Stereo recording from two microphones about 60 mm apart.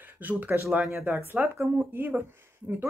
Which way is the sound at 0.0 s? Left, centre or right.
Right.